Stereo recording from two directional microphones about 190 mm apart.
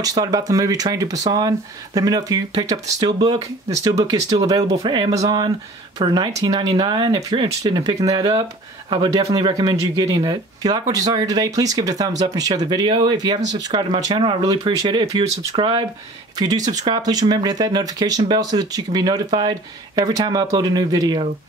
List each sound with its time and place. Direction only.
0.0 s speech: 20° right (ahead or behind)